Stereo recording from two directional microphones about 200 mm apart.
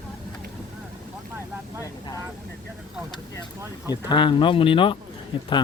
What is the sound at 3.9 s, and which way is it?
Speech, 20° left (ahead or behind).